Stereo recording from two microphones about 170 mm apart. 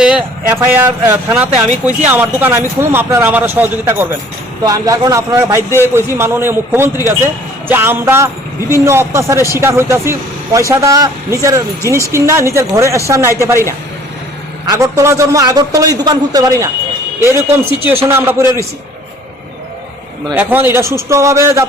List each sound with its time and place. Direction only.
0.0 s a man's voice: 5° right (ahead or behind)
14.7 s a man's voice: 20° right (ahead or behind)
20.3 s a man's voice: 10° right (ahead or behind)